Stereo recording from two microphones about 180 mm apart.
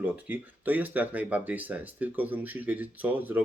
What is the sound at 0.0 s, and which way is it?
Speech, 10° right (ahead or behind).